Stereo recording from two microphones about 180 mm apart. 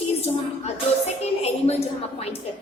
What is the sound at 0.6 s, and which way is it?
A woman's voice, 35° left (ahead or behind).